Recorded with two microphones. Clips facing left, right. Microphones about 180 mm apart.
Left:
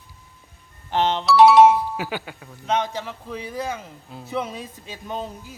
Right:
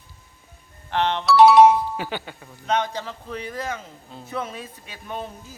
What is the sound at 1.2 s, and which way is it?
Speech, centre (ahead or behind).